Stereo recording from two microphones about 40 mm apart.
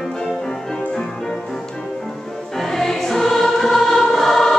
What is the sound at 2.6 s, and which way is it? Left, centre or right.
Music, centre.